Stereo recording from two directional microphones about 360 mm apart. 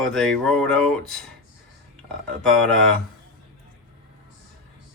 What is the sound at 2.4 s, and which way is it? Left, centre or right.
Speech, centre.